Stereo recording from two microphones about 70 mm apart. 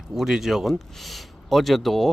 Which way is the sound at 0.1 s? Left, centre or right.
Centre.